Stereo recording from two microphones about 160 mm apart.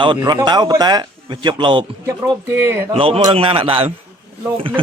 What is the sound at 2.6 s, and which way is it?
Speech, 15° right (ahead or behind).